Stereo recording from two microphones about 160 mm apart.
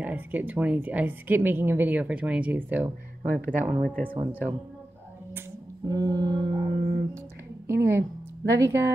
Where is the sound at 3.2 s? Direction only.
65° right (ahead or behind).